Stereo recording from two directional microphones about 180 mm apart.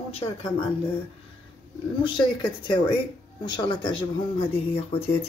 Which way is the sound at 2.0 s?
25° left (ahead or behind).